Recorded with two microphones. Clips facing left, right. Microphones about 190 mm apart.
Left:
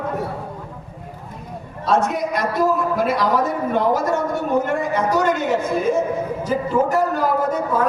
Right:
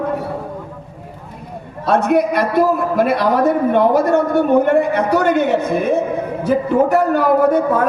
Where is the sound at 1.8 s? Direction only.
60° right (ahead or behind).